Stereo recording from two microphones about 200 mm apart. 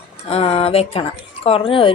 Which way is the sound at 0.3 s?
30° left (ahead or behind).